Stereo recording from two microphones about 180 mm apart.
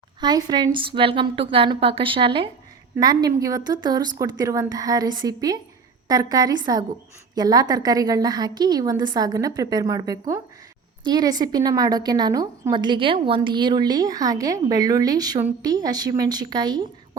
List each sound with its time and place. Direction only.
0.2 s a woman's voice: 25° right (ahead or behind)